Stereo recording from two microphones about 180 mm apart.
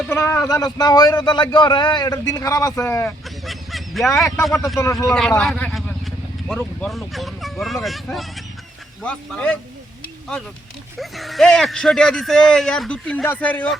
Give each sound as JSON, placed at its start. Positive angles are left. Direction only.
{"t": 0.1, "sound": "a man's voice", "side_deg": 15}
{"t": 3.4, "sound": "a sound", "side_deg": 0}
{"t": 4.8, "sound": "speech", "side_deg": 15}
{"t": 5.4, "sound": "vehicle", "side_deg": 5}
{"t": 6.6, "sound": "a man's voice", "side_deg": 5}
{"t": 10.9, "sound": "a man's voice", "side_deg": 0}